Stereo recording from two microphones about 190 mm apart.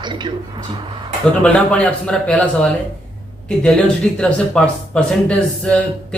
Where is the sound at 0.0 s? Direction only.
25° right (ahead or behind).